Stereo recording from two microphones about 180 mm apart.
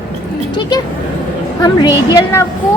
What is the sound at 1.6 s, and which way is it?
Speech, 20° left (ahead or behind).